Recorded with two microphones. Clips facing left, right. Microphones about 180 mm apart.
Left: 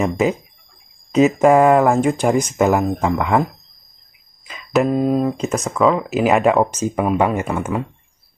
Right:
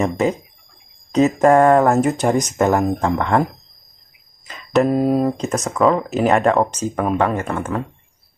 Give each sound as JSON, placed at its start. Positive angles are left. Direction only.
{"t": 0.0, "sound": "speech", "side_deg": 5}
{"t": 4.8, "sound": "speech", "side_deg": -5}